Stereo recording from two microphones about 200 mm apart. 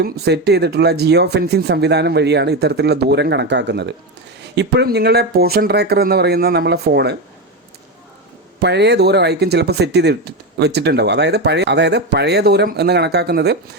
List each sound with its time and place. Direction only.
0.0 s speech: 55° right (ahead or behind)
8.6 s speech: 55° right (ahead or behind)